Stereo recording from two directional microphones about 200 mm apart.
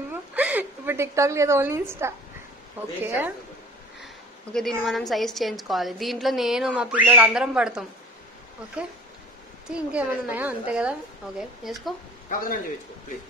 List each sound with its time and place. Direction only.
0.1 s a sound: 5° right (ahead or behind)
2.8 s a woman's voice: 10° right (ahead or behind)
4.0 s a woman's voice: centre (ahead or behind)
9.7 s a woman's voice: 5° right (ahead or behind)
12.3 s a man's voice: 45° left (ahead or behind)